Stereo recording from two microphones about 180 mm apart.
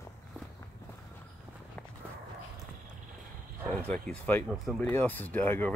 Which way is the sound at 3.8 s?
10° left (ahead or behind).